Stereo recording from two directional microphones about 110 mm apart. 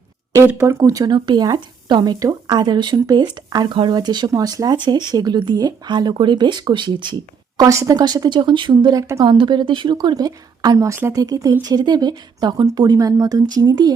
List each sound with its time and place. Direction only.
0.3 s speech: 20° right (ahead or behind)
0.8 s speech: 35° right (ahead or behind)
9.2 s speech: 45° right (ahead or behind)